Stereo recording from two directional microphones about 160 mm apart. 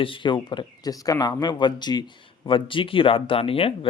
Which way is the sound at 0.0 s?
30° left (ahead or behind).